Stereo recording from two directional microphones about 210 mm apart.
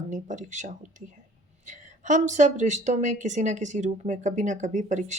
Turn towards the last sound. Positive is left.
turn(degrees=-35)  # may be behind; listen again after turning